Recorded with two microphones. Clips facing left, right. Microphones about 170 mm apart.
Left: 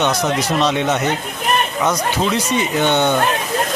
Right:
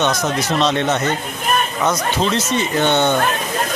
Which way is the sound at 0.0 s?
10° left (ahead or behind).